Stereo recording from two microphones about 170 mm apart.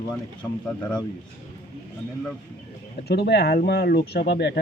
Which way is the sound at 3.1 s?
75° left (ahead or behind).